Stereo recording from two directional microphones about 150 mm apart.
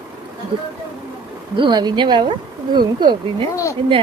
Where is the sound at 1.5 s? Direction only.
30° right (ahead or behind).